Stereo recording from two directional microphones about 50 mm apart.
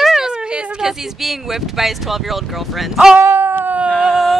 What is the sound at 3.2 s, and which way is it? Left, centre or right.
Dog, right.